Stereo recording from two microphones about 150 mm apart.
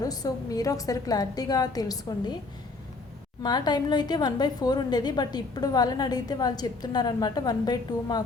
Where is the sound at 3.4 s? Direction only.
30° left (ahead or behind).